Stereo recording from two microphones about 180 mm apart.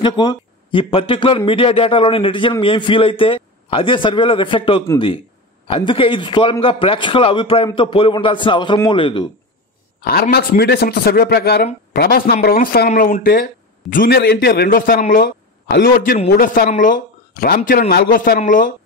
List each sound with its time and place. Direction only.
0.0 s a man's voice: 25° left (ahead or behind)
10.3 s a man's voice: 60° left (ahead or behind)